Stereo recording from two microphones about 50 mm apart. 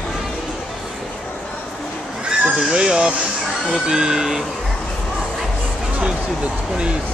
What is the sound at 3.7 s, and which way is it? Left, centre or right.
Music, centre.